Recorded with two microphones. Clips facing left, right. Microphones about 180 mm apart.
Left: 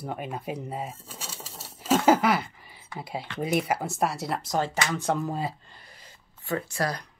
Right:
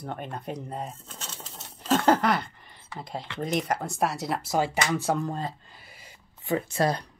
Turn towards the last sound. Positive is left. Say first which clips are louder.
# right 4 dB
turn(degrees=-25)  # may be behind; listen again after turning